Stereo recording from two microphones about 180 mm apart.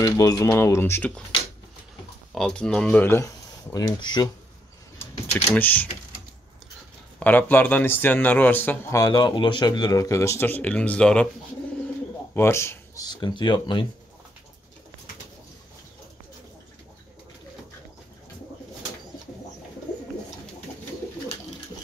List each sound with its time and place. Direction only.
0.0 s speech: 20° left (ahead or behind)
2.3 s speech: 5° left (ahead or behind)
3.7 s speech: 25° left (ahead or behind)
5.3 s speech: 10° left (ahead or behind)
7.2 s speech: 10° left (ahead or behind)
12.4 s speech: 15° left (ahead or behind)